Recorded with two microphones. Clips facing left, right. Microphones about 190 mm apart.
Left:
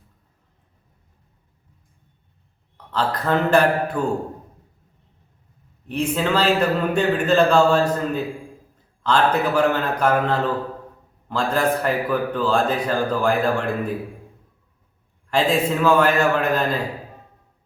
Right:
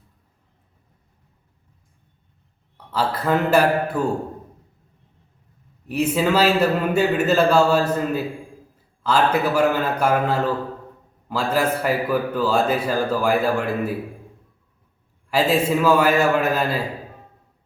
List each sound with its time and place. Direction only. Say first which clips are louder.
2.9 s a man's voice: even; 10° right (ahead or behind)
5.9 s a man's voice: right 2 dB; 5° right (ahead or behind)
15.3 s a man's voice: right 1 dB; 5° right (ahead or behind)